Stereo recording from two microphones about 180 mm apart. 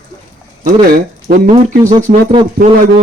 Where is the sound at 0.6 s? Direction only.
50° right (ahead or behind).